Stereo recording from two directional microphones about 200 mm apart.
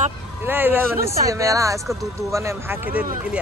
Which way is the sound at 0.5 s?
10° right (ahead or behind).